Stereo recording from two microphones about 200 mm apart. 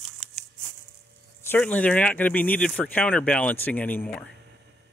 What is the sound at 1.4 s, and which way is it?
Speech, 5° left (ahead or behind).